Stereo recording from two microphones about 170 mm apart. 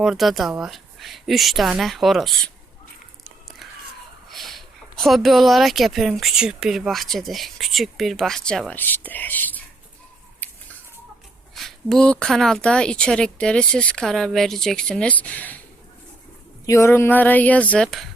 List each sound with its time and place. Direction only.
0.0 s speech: centre (ahead or behind)
4.3 s speech: centre (ahead or behind)
10.4 s chicken: 10° left (ahead or behind)
11.5 s speech: centre (ahead or behind)
16.6 s a woman's voice: 15° left (ahead or behind)